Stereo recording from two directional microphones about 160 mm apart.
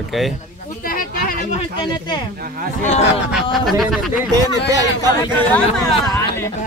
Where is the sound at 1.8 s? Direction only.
25° left (ahead or behind).